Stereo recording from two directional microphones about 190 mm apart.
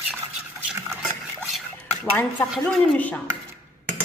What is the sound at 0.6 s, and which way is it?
Stir, 15° right (ahead or behind).